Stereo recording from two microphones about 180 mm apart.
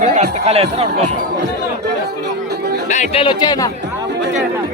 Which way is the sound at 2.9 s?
40° left (ahead or behind).